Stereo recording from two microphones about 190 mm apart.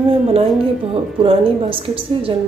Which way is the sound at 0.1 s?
30° right (ahead or behind).